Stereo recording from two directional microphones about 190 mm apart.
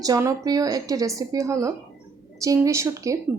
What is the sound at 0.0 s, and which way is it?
A woman's voice, 15° right (ahead or behind).